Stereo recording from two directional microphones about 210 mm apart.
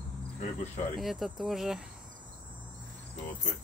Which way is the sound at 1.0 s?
Centre (ahead or behind).